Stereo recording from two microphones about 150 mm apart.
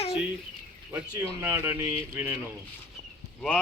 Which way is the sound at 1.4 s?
15° right (ahead or behind).